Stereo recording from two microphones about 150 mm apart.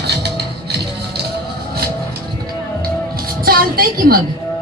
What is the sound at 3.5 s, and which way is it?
Speech, 80° right.